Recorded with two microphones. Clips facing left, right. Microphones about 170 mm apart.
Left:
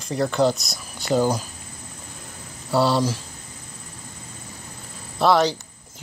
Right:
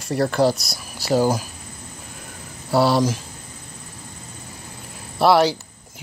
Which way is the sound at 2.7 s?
10° right (ahead or behind).